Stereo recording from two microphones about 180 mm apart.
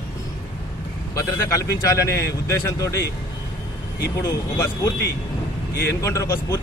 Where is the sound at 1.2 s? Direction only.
20° left (ahead or behind).